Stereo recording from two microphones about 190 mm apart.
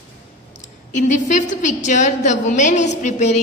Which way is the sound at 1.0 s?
40° left (ahead or behind).